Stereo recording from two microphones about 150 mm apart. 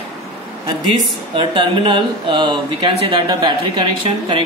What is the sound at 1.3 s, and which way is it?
Speech, 35° right (ahead or behind).